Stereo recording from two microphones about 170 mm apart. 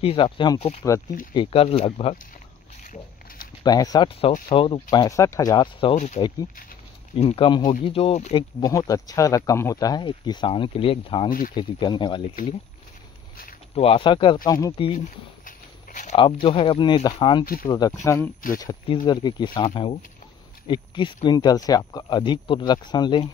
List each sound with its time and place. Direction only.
0.0 s speech: 30° left (ahead or behind)
2.8 s a sound: 50° left (ahead or behind)
3.6 s speech: 20° left (ahead or behind)
4.9 s speech: 20° left (ahead or behind)
5.9 s speech: 45° left (ahead or behind)
11.2 s speech: 55° left (ahead or behind)
11.5 s speech: 25° left (ahead or behind)
13.7 s speech: 35° left (ahead or behind)
14.9 s a sound: 50° left (ahead or behind)
16.2 s speech: 30° left (ahead or behind)